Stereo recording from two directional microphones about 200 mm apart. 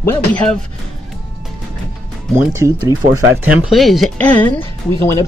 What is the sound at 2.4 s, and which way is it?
Speech, 15° right (ahead or behind).